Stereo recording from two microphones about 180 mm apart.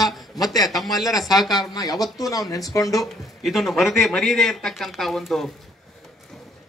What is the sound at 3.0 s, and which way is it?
Speech, centre (ahead or behind).